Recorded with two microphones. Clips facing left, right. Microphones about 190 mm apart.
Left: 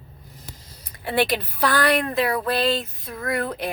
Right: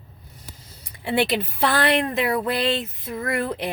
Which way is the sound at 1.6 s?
25° right (ahead or behind).